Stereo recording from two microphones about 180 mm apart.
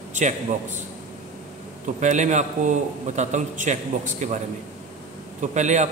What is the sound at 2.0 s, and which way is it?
A man's voice, 45° right (ahead or behind).